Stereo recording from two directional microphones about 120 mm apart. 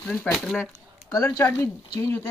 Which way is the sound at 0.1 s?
5° left (ahead or behind).